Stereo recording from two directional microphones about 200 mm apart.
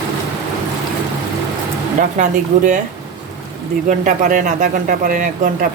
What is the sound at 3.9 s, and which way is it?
Speech, 40° right (ahead or behind).